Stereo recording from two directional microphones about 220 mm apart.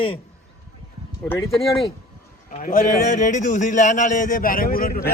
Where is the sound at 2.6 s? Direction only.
35° left (ahead or behind).